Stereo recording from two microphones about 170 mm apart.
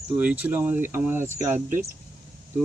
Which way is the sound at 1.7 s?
55° right (ahead or behind).